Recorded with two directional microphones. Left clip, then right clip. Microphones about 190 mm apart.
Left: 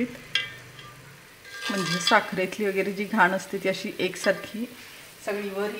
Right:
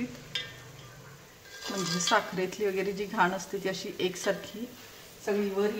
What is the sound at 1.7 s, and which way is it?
Speech, 35° left (ahead or behind).